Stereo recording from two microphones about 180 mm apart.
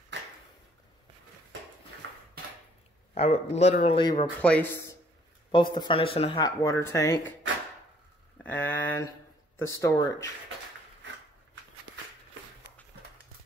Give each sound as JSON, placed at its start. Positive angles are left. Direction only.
{"t": 3.2, "sound": "speech", "side_deg": 35}
{"t": 4.0, "sound": "speech", "side_deg": 25}
{"t": 4.4, "sound": "speech", "side_deg": 10}
{"t": 5.5, "sound": "speech", "side_deg": 25}
{"t": 6.4, "sound": "speech", "side_deg": 15}
{"t": 8.5, "sound": "speech", "side_deg": 10}